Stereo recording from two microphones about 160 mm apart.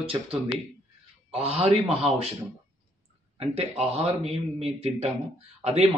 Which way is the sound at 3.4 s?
40° right (ahead or behind).